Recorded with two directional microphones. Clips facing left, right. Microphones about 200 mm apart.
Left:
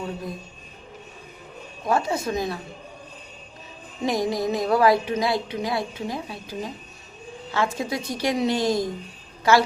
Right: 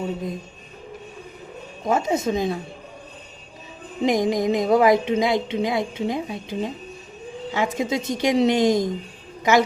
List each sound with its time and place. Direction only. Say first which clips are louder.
1.8 s speech: right 2 dB; 20° right (ahead or behind)
4.0 s a woman's voice: right 4 dB; 20° right (ahead or behind)